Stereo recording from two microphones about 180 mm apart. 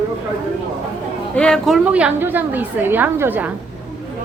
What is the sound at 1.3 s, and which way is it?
A woman's voice, 5° left (ahead or behind).